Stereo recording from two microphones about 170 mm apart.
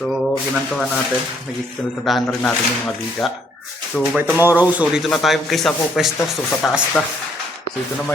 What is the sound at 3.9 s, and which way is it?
Speech, centre (ahead or behind).